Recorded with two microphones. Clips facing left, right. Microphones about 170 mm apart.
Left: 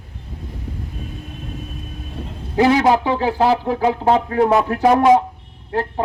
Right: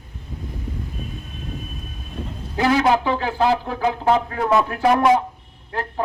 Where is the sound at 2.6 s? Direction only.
25° left (ahead or behind).